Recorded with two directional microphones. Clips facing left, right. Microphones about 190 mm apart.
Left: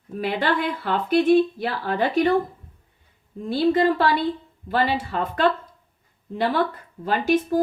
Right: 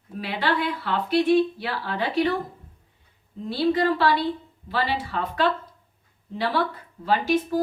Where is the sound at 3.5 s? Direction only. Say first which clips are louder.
Left 3 dB; 50° left (ahead or behind).